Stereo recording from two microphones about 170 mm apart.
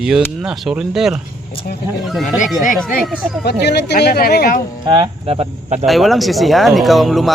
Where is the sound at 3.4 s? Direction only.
75° left (ahead or behind).